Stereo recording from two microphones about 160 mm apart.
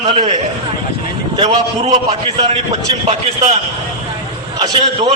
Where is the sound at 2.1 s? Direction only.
35° right (ahead or behind).